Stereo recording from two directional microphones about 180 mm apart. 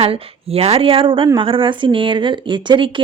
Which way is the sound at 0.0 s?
35° right (ahead or behind).